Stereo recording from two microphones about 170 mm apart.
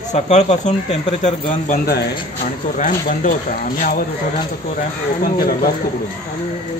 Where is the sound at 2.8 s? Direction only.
55° left (ahead or behind).